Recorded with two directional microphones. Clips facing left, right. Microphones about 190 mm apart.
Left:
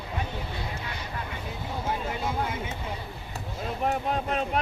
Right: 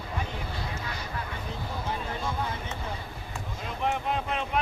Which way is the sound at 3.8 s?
40° left (ahead or behind).